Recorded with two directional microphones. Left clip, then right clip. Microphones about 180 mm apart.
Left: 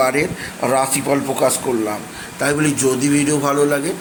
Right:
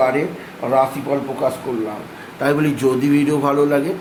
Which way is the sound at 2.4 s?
5° left (ahead or behind).